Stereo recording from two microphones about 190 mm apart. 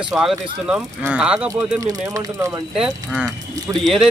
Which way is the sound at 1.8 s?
20° right (ahead or behind).